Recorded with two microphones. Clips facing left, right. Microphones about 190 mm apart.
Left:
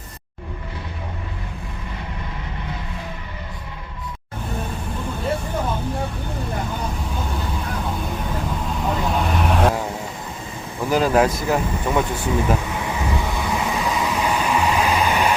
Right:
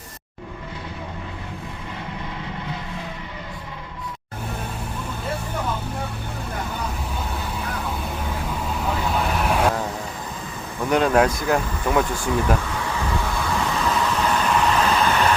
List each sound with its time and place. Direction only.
8.6 s vehicle: centre (ahead or behind)
10.8 s speech: centre (ahead or behind)
12.7 s vehicle: 15° left (ahead or behind)